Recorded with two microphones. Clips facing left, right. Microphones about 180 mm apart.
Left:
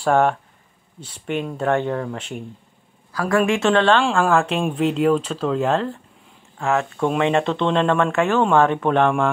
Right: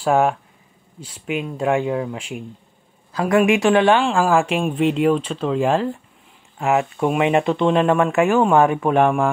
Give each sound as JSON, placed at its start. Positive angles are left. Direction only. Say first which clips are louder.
{"t": 0.0, "sound": "speech", "louder": "even", "side_deg": -5}
{"t": 3.1, "sound": "speech", "louder": "right 3 dB", "side_deg": -20}
{"t": 4.0, "sound": "speech", "louder": "right 1 dB", "side_deg": 0}
{"t": 6.6, "sound": "speech", "louder": "right 2 dB", "side_deg": -15}